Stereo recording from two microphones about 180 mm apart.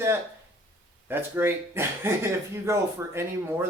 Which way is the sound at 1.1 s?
10° right (ahead or behind).